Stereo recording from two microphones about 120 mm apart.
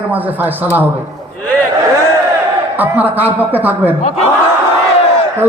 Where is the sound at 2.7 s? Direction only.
15° right (ahead or behind).